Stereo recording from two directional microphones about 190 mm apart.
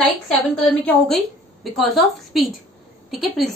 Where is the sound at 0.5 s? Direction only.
5° left (ahead or behind).